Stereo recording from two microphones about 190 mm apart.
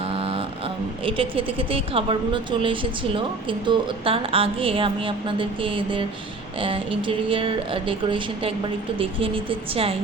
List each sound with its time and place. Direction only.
0.0 s a woman's voice: 30° right (ahead or behind)